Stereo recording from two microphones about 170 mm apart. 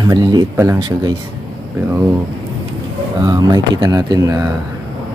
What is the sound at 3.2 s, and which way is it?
Speech, 20° right (ahead or behind).